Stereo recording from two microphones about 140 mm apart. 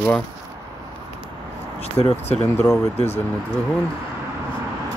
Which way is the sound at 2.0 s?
50° left (ahead or behind).